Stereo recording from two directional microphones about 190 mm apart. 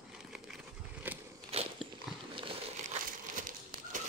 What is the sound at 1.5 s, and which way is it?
Biting, 30° right (ahead or behind).